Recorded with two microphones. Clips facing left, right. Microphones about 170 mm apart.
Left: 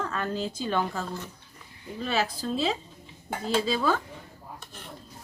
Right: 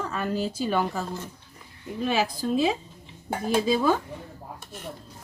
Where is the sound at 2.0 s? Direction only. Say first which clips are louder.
Right 3 dB; 15° right (ahead or behind).